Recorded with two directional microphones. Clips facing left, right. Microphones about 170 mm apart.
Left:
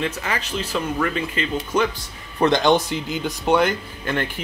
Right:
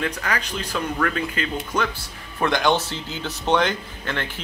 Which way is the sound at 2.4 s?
20° left (ahead or behind).